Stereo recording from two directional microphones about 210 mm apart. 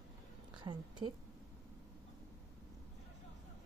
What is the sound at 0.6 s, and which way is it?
Speech, 20° right (ahead or behind).